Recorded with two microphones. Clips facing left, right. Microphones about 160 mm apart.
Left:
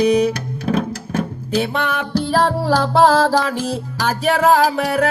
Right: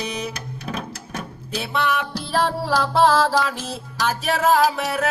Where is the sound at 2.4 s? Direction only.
40° left (ahead or behind).